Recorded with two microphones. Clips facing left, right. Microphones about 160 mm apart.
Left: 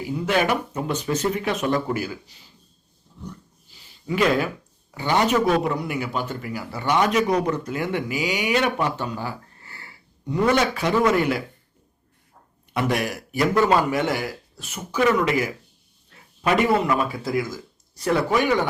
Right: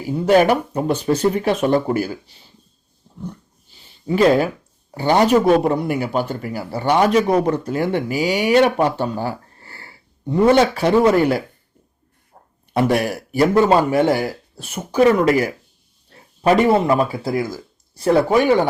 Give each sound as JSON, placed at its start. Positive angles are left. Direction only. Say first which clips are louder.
{"t": 0.1, "sound": "speech", "louder": "right 8 dB", "side_deg": -40}
{"t": 4.0, "sound": "speech", "louder": "right 6 dB", "side_deg": -35}
{"t": 6.0, "sound": "speech", "louder": "right 6 dB", "side_deg": -35}